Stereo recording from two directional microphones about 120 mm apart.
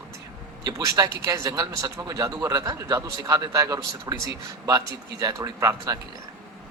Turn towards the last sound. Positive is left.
turn(degrees=-30)  # may be behind; listen again after turning